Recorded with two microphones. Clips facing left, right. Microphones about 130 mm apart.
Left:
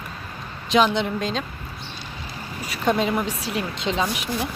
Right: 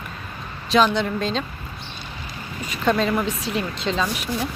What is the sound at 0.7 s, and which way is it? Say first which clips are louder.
Speech: right 1 dB; 20° left (ahead or behind).